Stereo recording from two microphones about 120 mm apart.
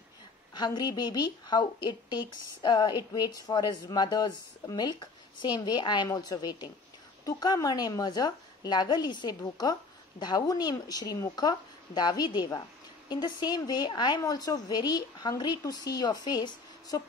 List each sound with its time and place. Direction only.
0.6 s a woman's voice: 35° left (ahead or behind)